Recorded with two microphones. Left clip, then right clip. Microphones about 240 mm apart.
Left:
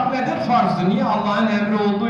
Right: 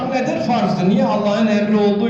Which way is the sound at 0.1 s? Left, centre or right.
Centre.